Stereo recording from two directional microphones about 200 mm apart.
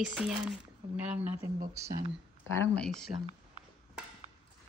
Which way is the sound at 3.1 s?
30° right (ahead or behind).